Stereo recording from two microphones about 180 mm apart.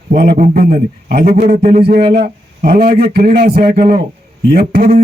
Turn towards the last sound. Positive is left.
turn(degrees=-55)  # may be behind; listen again after turning